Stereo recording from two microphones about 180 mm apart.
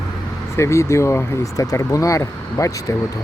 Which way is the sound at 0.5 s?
15° left (ahead or behind).